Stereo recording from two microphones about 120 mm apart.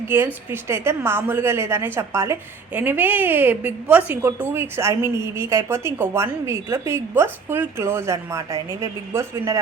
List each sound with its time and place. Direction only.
0.5 s a woman's voice: 20° right (ahead or behind)